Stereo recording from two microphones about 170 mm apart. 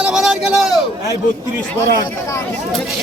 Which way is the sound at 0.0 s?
5° right (ahead or behind).